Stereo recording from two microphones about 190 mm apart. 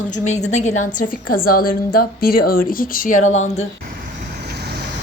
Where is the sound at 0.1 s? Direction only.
35° left (ahead or behind).